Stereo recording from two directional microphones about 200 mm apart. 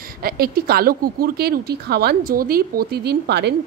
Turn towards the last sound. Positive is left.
turn(degrees=-55)  # may be behind; listen again after turning